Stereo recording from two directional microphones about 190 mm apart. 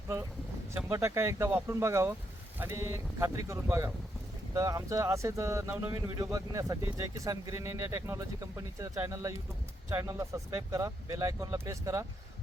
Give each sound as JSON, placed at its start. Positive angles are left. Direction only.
{"t": 0.9, "sound": "speech", "side_deg": -15}